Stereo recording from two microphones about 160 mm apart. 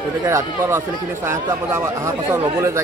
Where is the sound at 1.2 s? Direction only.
15° right (ahead or behind).